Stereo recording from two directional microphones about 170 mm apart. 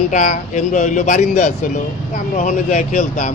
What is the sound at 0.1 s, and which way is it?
Speech, 45° left (ahead or behind).